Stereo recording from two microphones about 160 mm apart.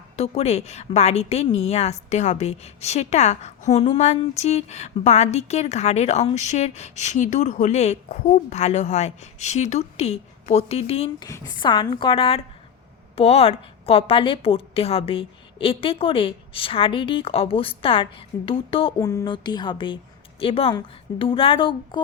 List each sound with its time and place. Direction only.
0.2 s a woman's voice: 40° left (ahead or behind)
11.3 s a woman's voice: 20° left (ahead or behind)
18.9 s a woman's voice: 20° left (ahead or behind)